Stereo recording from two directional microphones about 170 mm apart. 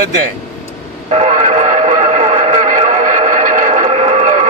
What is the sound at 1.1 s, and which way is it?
Music, 45° right (ahead or behind).